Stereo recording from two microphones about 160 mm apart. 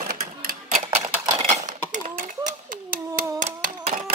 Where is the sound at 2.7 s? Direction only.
60° right (ahead or behind).